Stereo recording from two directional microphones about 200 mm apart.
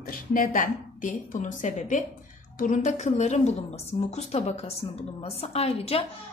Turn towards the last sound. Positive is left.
turn(degrees=30)  # may be behind; listen again after turning